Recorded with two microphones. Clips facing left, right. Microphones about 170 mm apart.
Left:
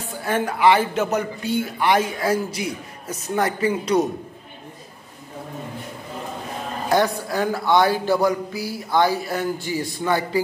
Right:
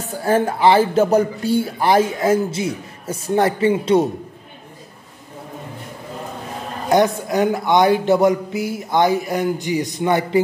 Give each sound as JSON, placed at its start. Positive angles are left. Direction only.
{"t": 0.2, "sound": "a man's voice", "side_deg": -30}
{"t": 6.9, "sound": "a man's voice", "side_deg": -20}